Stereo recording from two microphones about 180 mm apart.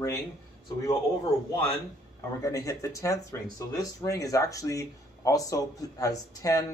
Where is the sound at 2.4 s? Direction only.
15° left (ahead or behind).